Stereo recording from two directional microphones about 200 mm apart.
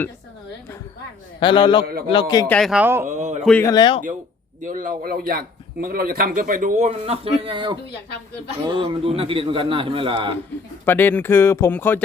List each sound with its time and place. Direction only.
1.4 s a man's voice: 25° left (ahead or behind)
2.5 s speech: centre (ahead or behind)
3.1 s a man's voice: 35° right (ahead or behind)
3.4 s speech: 5° left (ahead or behind)
3.7 s a man's voice: 20° left (ahead or behind)
4.6 s a man's voice: 40° right (ahead or behind); by 10.3 s 25° right (ahead or behind)
10.8 s speech: 10° left (ahead or behind)